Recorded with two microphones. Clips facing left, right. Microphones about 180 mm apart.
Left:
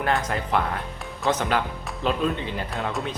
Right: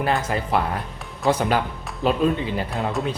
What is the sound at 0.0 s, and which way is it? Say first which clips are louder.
Speech: right 2 dB; 5° right (ahead or behind).